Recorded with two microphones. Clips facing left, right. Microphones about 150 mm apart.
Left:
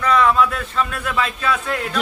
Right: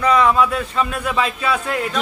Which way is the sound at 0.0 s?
5° right (ahead or behind).